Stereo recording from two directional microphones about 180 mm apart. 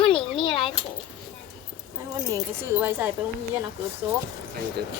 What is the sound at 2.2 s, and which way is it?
Speech, 20° right (ahead or behind).